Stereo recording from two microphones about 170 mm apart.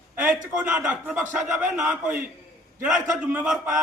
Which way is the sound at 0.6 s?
10° right (ahead or behind).